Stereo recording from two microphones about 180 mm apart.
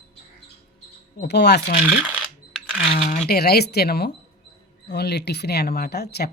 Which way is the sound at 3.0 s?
40° left (ahead or behind).